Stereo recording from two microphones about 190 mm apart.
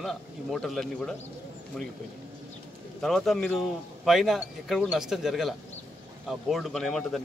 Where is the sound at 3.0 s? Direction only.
Centre (ahead or behind).